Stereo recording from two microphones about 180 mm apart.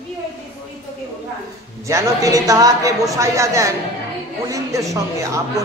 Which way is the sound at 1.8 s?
20° right (ahead or behind).